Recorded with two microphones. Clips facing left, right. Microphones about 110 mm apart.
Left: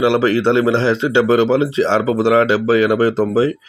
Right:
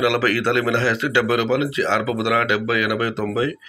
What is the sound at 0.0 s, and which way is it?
Speech, 25° left (ahead or behind).